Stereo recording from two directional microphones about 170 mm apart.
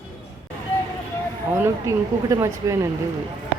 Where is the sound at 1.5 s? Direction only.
15° right (ahead or behind).